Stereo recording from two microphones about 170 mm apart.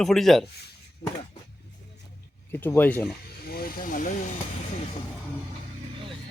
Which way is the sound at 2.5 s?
10° left (ahead or behind).